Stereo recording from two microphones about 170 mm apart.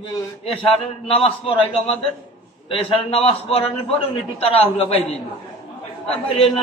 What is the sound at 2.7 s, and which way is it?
A man's voice, 35° left (ahead or behind).